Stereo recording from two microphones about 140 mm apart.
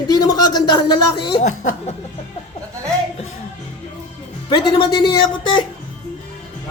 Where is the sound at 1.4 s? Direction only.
60° left (ahead or behind).